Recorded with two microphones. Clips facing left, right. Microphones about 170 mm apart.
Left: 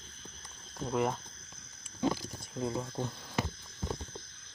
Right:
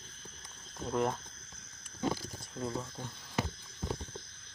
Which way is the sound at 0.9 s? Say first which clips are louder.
Left 1 dB; 5° left (ahead or behind).